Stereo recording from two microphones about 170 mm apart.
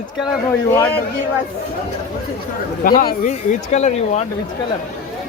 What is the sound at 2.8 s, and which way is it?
Speech, 55° left (ahead or behind).